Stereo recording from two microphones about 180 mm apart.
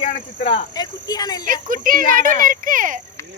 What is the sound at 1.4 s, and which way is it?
Speech, 50° right (ahead or behind).